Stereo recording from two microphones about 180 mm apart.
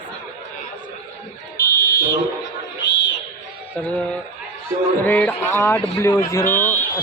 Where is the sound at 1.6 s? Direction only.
55° left (ahead or behind).